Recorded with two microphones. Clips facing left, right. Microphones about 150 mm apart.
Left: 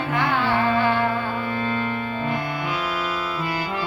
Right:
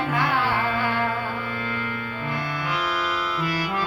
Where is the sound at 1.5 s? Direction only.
25° left (ahead or behind).